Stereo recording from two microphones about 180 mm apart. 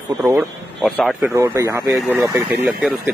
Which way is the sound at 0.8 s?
Centre (ahead or behind).